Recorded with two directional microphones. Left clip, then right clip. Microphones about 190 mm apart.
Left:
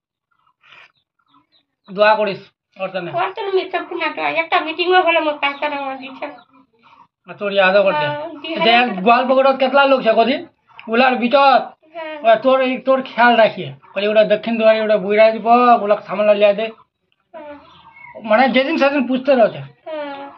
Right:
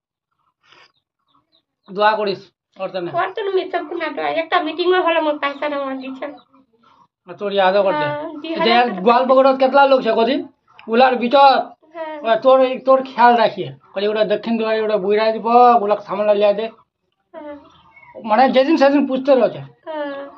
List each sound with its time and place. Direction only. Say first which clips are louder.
0.7 s dog: left 5 dB; 30° right (ahead or behind)
1.9 s speech: left 2 dB; 35° right (ahead or behind)
3.2 s a woman's voice: left 1 dB; 15° right (ahead or behind)
7.2 s speech: left 1 dB; 40° right (ahead or behind)
8.4 s a woman's voice: even; 20° right (ahead or behind)
9.0 s speech: right 2 dB; 30° right (ahead or behind)
18.2 s speech: even; 35° right (ahead or behind)
19.8 s a sound: right 1 dB; 20° right (ahead or behind)